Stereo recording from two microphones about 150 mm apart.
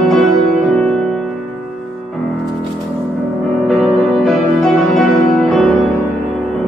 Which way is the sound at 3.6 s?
Centre (ahead or behind).